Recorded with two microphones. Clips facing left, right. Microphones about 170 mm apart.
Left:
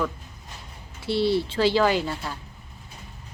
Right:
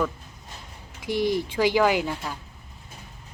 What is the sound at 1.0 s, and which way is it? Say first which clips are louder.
Speech: left 2 dB; 15° right (ahead or behind).